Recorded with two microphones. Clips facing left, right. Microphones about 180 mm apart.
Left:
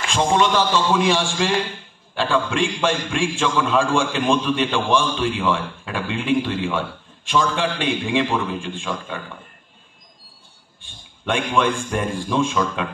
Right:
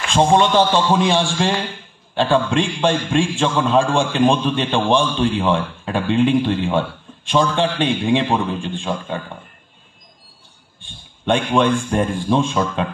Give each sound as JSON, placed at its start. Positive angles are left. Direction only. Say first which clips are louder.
{"t": 0.1, "sound": "a man's voice", "louder": "right 4 dB", "side_deg": -35}
{"t": 11.2, "sound": "a man's voice", "louder": "right 4 dB", "side_deg": -35}